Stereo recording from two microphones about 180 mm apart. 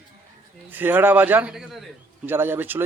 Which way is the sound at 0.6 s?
10° right (ahead or behind).